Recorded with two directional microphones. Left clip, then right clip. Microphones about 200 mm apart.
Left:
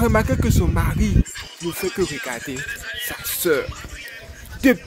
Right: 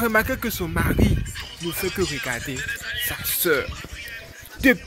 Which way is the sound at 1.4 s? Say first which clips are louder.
Left 1 dB; 50° left (ahead or behind).